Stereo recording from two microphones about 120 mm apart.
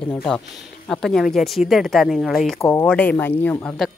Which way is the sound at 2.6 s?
20° left (ahead or behind).